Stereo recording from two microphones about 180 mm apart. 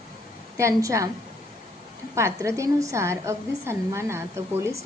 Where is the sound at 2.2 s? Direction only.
15° right (ahead or behind).